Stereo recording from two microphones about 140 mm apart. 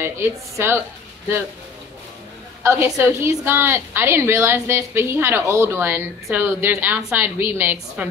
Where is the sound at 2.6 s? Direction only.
20° right (ahead or behind).